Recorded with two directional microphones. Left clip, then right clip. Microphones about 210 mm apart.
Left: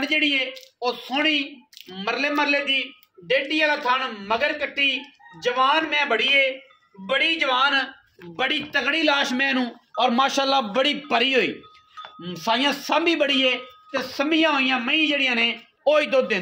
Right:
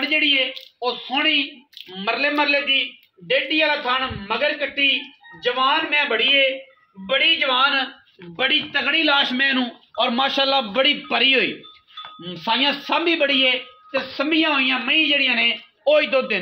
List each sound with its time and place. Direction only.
0.1 s a man's voice: 35° left (ahead or behind); by 16.3 s 50° left (ahead or behind)